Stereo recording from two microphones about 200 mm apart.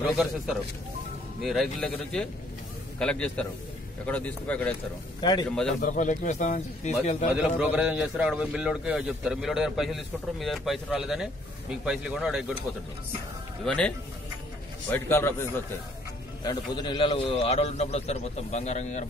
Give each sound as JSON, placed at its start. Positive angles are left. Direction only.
{"t": 1.4, "sound": "a man's voice", "side_deg": 0}
{"t": 5.2, "sound": "a man's voice", "side_deg": 20}
{"t": 5.5, "sound": "speech", "side_deg": 5}
{"t": 5.8, "sound": "a man's voice", "side_deg": 40}
{"t": 7.3, "sound": "speech", "side_deg": -5}
{"t": 13.7, "sound": "a man's voice", "side_deg": 5}